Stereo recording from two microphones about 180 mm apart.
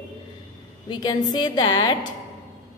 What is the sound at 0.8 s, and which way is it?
A woman's voice, 25° left (ahead or behind).